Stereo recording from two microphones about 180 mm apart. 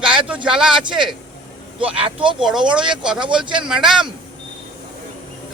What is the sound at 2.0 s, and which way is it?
Speech, 30° right (ahead or behind).